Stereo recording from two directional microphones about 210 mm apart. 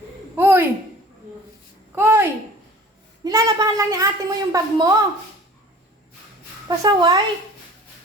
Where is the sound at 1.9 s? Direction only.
10° right (ahead or behind).